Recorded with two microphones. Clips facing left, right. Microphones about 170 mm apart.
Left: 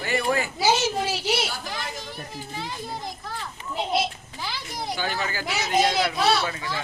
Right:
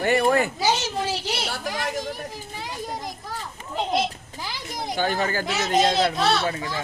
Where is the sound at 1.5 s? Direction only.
70° right (ahead or behind).